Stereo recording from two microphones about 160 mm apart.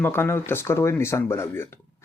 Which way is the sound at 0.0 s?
15° left (ahead or behind).